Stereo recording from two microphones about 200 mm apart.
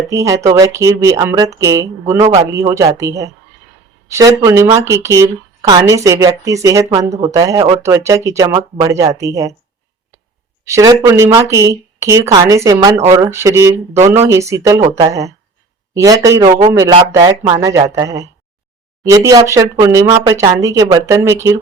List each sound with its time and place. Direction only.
0.1 s a woman's voice: 15° right (ahead or behind)
10.7 s a woman's voice: 15° right (ahead or behind)
14.8 s speech: 25° right (ahead or behind)
16.0 s a woman's voice: 15° right (ahead or behind)